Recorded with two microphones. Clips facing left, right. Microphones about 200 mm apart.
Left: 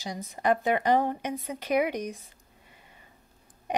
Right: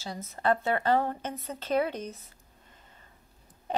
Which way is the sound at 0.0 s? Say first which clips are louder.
Left 1 dB; 15° left (ahead or behind).